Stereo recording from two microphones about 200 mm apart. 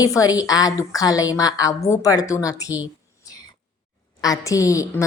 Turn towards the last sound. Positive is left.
turn(degrees=15)  # may be behind; listen again after turning